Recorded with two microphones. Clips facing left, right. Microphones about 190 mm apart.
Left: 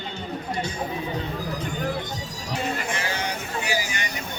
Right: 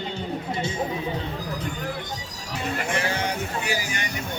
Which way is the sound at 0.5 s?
25° right (ahead or behind).